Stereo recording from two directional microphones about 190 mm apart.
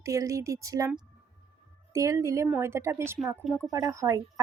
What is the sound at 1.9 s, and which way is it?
Speech, 15° right (ahead or behind).